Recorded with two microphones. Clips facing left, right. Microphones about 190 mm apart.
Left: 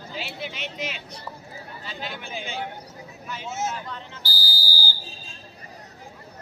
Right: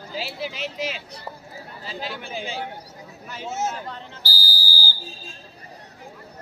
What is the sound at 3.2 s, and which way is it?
Speech, 45° right (ahead or behind).